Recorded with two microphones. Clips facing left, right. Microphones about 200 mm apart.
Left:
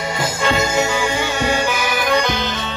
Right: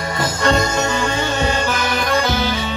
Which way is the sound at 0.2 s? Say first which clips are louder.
Right 2 dB; 5° left (ahead or behind).